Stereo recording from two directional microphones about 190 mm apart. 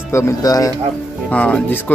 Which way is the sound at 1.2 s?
5° left (ahead or behind).